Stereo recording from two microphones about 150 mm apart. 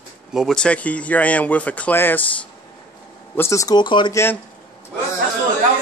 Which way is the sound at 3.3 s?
20° left (ahead or behind).